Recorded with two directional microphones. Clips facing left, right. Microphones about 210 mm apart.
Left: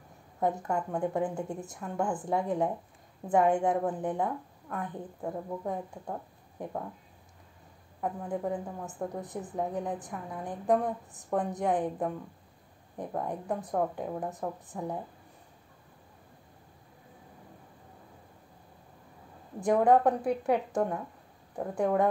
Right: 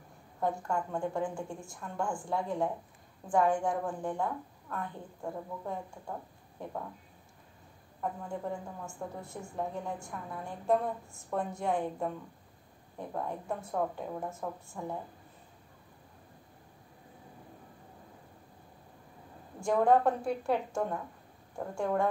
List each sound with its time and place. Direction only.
0.4 s a woman's voice: 20° left (ahead or behind)
8.0 s a woman's voice: 20° left (ahead or behind)
13.1 s a woman's voice: 15° left (ahead or behind)
19.6 s a woman's voice: 20° left (ahead or behind)